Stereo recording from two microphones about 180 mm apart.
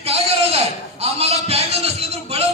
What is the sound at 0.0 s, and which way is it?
Sheep, 35° right (ahead or behind).